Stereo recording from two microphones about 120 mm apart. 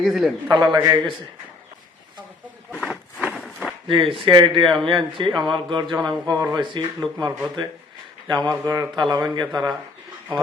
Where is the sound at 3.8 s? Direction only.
50° right (ahead or behind).